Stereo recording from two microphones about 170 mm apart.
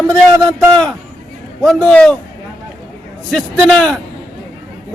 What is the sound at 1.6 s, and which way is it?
Speech, 5° left (ahead or behind).